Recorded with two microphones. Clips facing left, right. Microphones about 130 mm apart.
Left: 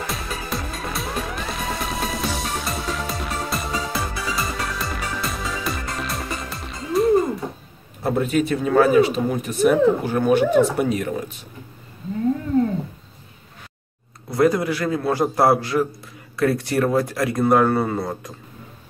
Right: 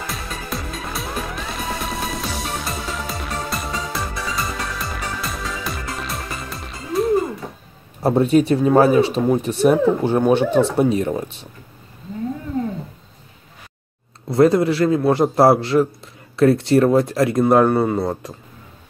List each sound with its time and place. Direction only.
0.0 s music: centre (ahead or behind)
8.0 s speech: 35° right (ahead or behind)
14.3 s a man's voice: 25° right (ahead or behind)